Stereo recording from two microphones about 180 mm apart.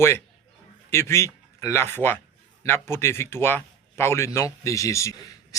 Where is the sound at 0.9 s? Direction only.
15° left (ahead or behind).